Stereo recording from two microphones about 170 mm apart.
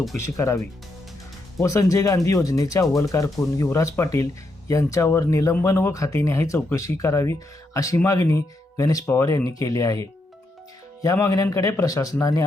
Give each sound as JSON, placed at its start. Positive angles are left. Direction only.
{"t": 0.3, "sound": "speech", "side_deg": 20}